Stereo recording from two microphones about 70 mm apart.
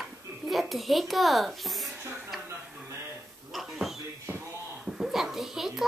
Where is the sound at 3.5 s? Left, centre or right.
Centre.